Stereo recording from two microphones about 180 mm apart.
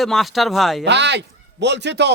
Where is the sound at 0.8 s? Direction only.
75° right (ahead or behind).